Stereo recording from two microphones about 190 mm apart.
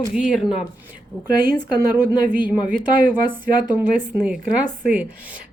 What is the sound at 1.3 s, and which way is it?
Speech, 50° right (ahead or behind).